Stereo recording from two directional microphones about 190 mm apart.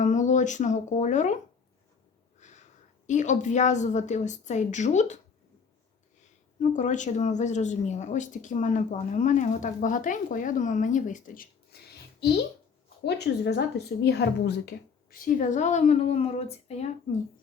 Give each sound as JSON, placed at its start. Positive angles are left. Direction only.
{"t": 0.0, "sound": "speech", "side_deg": 40}
{"t": 2.4, "sound": "a sound", "side_deg": 40}
{"t": 3.1, "sound": "speech", "side_deg": 40}
{"t": 6.6, "sound": "speech", "side_deg": 40}
{"t": 13.1, "sound": "a woman's voice", "side_deg": 60}
{"t": 15.1, "sound": "speech", "side_deg": 45}